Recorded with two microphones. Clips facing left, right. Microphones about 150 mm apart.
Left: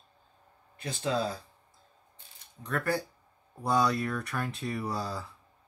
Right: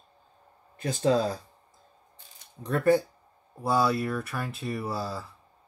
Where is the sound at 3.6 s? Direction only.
5° right (ahead or behind).